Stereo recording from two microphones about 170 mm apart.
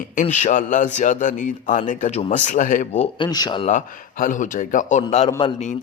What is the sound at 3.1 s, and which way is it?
Speech, 25° left (ahead or behind).